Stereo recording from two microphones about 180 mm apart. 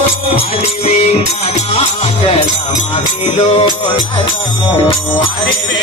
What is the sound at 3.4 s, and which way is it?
Music, 35° left (ahead or behind).